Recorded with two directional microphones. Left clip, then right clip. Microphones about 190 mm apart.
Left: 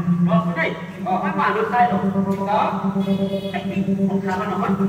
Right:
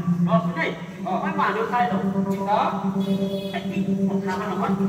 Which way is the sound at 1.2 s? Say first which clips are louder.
Left 2 dB; 20° left (ahead or behind).